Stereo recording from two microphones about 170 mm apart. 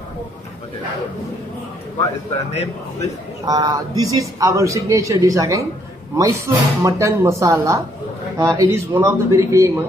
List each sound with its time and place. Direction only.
2.5 s speech: 40° left (ahead or behind)
3.4 s a man's voice: 25° right (ahead or behind)